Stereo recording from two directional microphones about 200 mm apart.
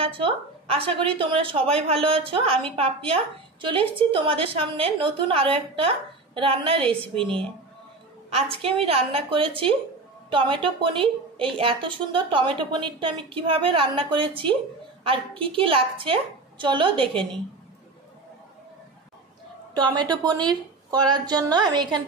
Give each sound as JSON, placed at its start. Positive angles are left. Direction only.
{"t": 0.0, "sound": "a woman's voice", "side_deg": -25}
{"t": 19.7, "sound": "a woman's voice", "side_deg": -20}